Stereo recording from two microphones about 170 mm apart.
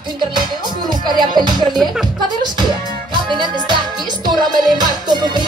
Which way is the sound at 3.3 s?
25° right (ahead or behind).